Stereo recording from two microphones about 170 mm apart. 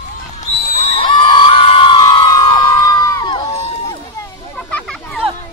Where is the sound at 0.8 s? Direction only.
35° left (ahead or behind); by 4.3 s 20° left (ahead or behind).